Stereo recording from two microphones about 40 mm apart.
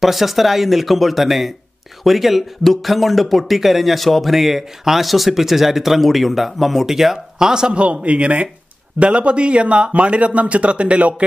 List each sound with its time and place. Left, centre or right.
0.0 s speech: centre; by 11.2 s right